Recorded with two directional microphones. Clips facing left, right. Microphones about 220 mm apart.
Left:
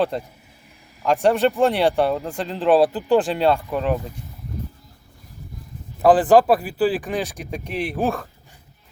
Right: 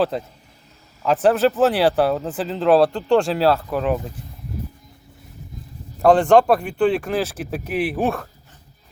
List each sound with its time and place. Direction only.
0.0 s speech: centre (ahead or behind)
6.0 s speech: 5° left (ahead or behind)